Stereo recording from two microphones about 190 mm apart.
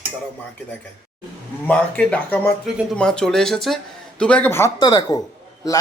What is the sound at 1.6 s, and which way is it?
Speech, 5° left (ahead or behind).